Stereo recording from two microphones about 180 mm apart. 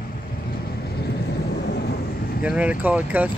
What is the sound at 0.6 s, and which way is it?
Vehicle, 60° left (ahead or behind).